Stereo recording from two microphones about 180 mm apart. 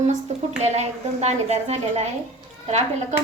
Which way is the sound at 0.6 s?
35° right (ahead or behind).